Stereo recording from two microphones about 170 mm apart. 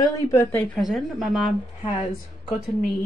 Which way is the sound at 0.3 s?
15° left (ahead or behind).